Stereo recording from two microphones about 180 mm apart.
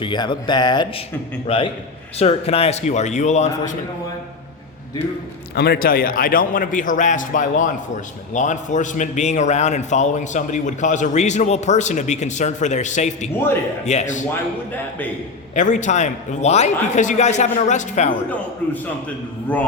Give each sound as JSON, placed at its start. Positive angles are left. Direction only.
{"t": 0.0, "sound": "a man's voice", "side_deg": 25}
{"t": 5.5, "sound": "a man's voice", "side_deg": 65}
{"t": 15.5, "sound": "a man's voice", "side_deg": 45}
{"t": 18.3, "sound": "a man's voice", "side_deg": 10}